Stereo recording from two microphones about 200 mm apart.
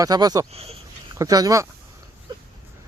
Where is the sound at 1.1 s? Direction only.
15° right (ahead or behind).